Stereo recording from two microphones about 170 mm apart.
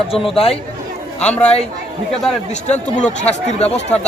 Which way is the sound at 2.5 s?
45° left (ahead or behind).